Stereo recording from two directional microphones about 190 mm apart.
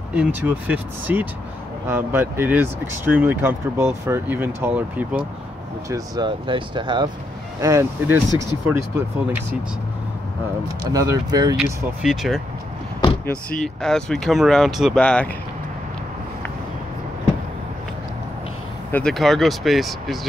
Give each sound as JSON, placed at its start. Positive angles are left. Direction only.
{"t": 0.1, "sound": "speech", "side_deg": -10}
{"t": 5.9, "sound": "speech", "side_deg": -20}
{"t": 10.9, "sound": "speech", "side_deg": -20}
{"t": 12.0, "sound": "speech", "side_deg": -5}
{"t": 18.9, "sound": "speech", "side_deg": 5}